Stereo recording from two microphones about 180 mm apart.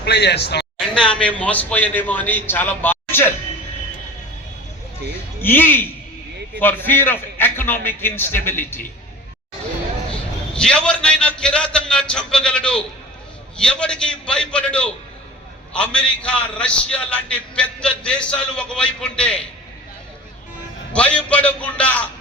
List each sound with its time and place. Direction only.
0.0 s a man's voice: 70° left (ahead or behind)
1.0 s a man's voice: 5° left (ahead or behind)
5.4 s a man's voice: 10° left (ahead or behind)
10.5 s a man's voice: 5° left (ahead or behind)
20.9 s a man's voice: 5° left (ahead or behind)